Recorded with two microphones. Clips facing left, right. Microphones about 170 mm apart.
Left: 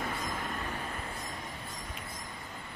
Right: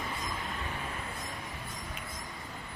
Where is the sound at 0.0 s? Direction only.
50° left (ahead or behind).